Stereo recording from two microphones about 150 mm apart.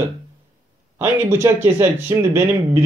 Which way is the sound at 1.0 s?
15° right (ahead or behind).